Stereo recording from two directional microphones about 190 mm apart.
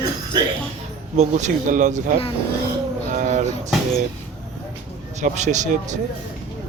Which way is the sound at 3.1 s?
45° right (ahead or behind).